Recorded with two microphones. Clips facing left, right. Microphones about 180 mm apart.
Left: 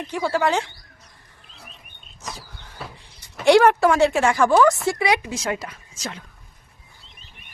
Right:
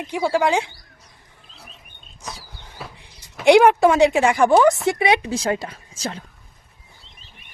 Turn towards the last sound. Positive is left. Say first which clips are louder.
# right 4 dB
turn(degrees=-30)  # may be behind; listen again after turning